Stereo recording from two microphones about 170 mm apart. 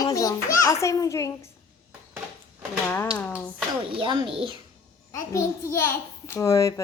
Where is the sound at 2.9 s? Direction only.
10° left (ahead or behind).